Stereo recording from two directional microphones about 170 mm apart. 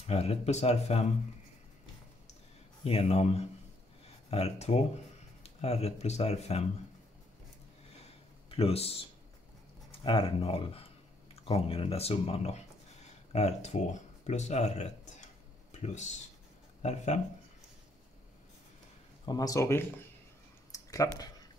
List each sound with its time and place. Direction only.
0.0 s speech: 35° left (ahead or behind)
2.8 s speech: 35° left (ahead or behind)
8.5 s speech: 35° left (ahead or behind)
19.2 s speech: 20° left (ahead or behind)
20.7 s a sound: 20° left (ahead or behind)